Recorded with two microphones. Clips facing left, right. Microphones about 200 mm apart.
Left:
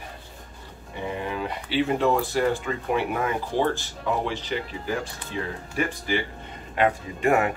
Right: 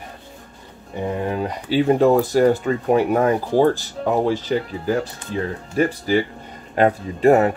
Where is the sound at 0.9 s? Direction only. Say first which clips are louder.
Right 7 dB; 45° right (ahead or behind).